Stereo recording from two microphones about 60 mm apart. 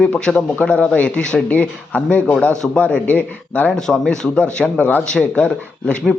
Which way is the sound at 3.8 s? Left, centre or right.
Centre.